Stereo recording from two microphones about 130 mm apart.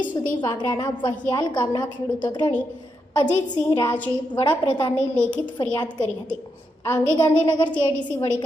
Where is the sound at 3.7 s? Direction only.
35° left (ahead or behind).